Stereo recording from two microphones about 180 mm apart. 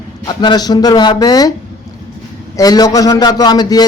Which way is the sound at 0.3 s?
20° left (ahead or behind).